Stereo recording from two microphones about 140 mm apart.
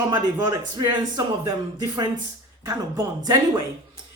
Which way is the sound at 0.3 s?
25° right (ahead or behind).